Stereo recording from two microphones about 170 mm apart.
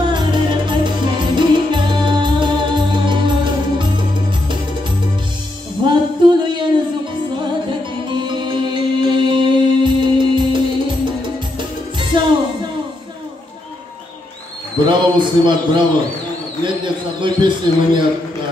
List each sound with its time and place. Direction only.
0.0 s music: 25° right (ahead or behind)
5.9 s a sound: 25° right (ahead or behind)
8.1 s music: 25° right (ahead or behind)
12.1 s music: 30° right (ahead or behind)
14.9 s a man's voice: 25° right (ahead or behind)
16.8 s a man's voice: 30° right (ahead or behind)